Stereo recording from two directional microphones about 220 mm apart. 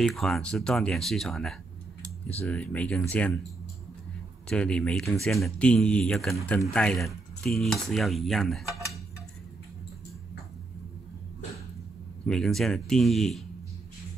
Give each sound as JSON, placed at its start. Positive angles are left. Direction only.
{"t": 0.0, "sound": "cutlery", "side_deg": 0}
{"t": 4.5, "sound": "cutlery", "side_deg": 5}
{"t": 12.3, "sound": "cutlery", "side_deg": 0}